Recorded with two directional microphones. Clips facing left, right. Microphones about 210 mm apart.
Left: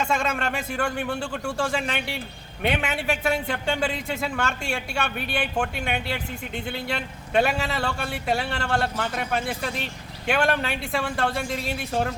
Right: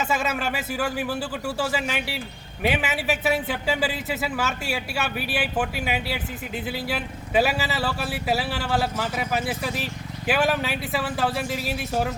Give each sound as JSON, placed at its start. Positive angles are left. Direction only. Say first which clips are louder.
{"t": 0.0, "sound": "speech", "louder": "even", "side_deg": -5}